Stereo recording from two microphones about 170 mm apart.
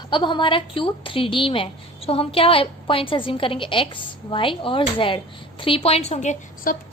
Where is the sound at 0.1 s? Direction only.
30° left (ahead or behind).